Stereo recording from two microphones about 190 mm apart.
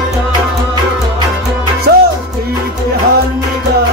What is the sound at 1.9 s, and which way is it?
Music, 55° right (ahead or behind).